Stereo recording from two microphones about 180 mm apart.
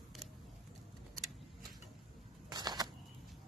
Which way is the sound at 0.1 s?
Centre (ahead or behind).